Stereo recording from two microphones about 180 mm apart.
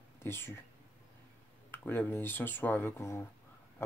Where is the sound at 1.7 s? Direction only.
10° left (ahead or behind).